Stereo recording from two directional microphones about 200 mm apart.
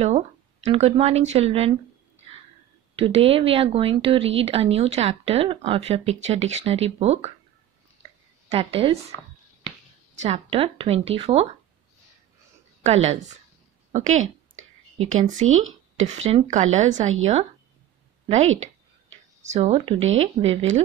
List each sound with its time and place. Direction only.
0.7 s speech: 30° right (ahead or behind)
3.0 s speech: 30° right (ahead or behind)
8.5 s speech: 25° right (ahead or behind)
10.2 s speech: 30° right (ahead or behind)
12.8 s speech: 30° right (ahead or behind)
15.4 s speech: 85° right
16.3 s speech: 35° right (ahead or behind)
19.4 s speech: 35° right (ahead or behind)